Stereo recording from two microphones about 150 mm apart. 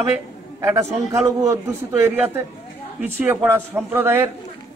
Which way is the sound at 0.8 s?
45° right (ahead or behind).